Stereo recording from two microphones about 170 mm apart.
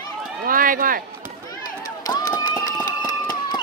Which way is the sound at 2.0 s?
25° left (ahead or behind).